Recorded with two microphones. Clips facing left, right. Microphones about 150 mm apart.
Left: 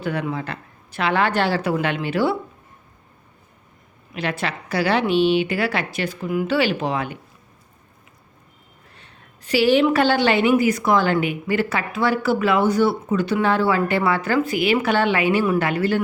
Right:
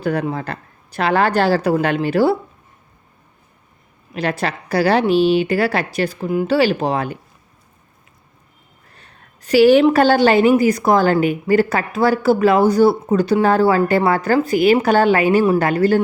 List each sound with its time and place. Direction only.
0.0 s a woman's voice: 40° right (ahead or behind)
4.1 s a woman's voice: 40° right (ahead or behind)
9.0 s a sound: 40° right (ahead or behind)
9.8 s a woman's voice: 40° right (ahead or behind)